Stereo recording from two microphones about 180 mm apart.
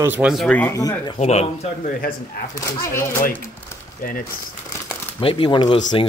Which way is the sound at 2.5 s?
15° left (ahead or behind).